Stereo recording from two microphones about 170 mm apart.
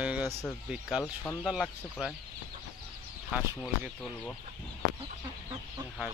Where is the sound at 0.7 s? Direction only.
5° right (ahead or behind).